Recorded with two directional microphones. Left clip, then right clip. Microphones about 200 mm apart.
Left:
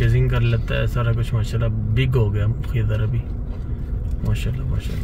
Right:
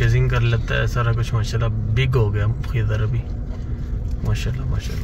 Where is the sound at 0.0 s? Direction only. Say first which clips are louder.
Right 1 dB; 10° left (ahead or behind).